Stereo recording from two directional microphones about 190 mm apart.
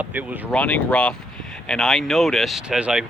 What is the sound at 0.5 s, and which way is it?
Speech, 5° left (ahead or behind).